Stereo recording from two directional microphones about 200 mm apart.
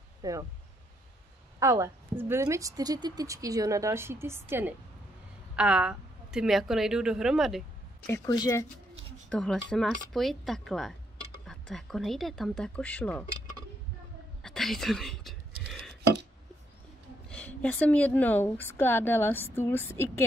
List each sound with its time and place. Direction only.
0.2 s speech: 15° right (ahead or behind)
1.6 s a woman's voice: 15° right (ahead or behind)
8.1 s a woman's voice: 15° left (ahead or behind)
9.3 s a woman's voice: 5° left (ahead or behind)
14.4 s speech: centre (ahead or behind)
15.7 s a sound: centre (ahead or behind)
17.3 s a woman's voice: 5° left (ahead or behind)